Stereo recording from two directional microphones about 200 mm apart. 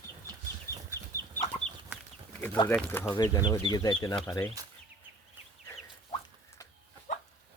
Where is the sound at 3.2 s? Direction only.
20° left (ahead or behind).